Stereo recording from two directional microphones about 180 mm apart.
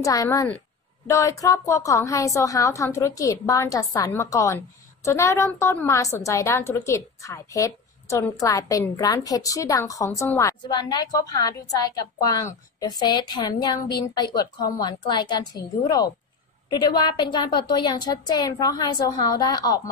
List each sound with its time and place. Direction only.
0.0 s a woman's voice: 20° left (ahead or behind)